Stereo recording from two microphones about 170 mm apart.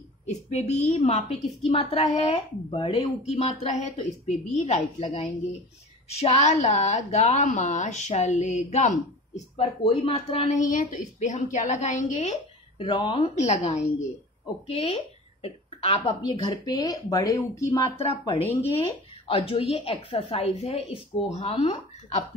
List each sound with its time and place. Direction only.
0.3 s a woman's voice: 40° left (ahead or behind)
12.7 s a woman's voice: 30° left (ahead or behind)
18.2 s a woman's voice: 30° left (ahead or behind)